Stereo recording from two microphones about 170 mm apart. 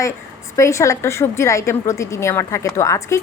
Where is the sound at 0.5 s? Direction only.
15° left (ahead or behind).